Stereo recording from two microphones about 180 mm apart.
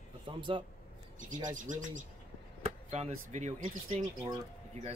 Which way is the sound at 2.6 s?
35° right (ahead or behind).